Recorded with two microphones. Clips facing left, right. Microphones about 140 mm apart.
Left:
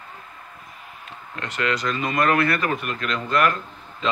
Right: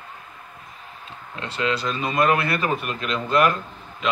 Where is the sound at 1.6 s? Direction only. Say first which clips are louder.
Even; 25° right (ahead or behind).